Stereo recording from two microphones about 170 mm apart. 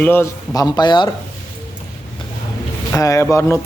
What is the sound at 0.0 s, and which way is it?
Speech, 15° left (ahead or behind).